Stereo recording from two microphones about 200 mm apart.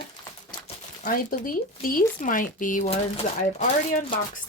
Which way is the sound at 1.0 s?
45° left (ahead or behind).